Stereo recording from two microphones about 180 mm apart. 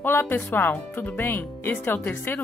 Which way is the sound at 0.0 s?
10° left (ahead or behind).